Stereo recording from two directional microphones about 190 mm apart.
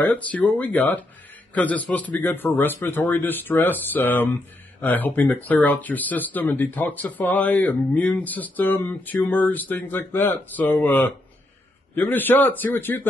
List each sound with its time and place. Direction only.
0.0 s speech: 5° left (ahead or behind)